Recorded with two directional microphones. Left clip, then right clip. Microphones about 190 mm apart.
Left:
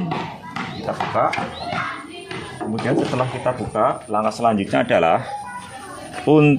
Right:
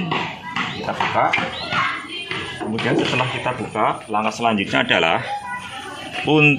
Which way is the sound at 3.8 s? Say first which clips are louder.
Even; 40° left (ahead or behind).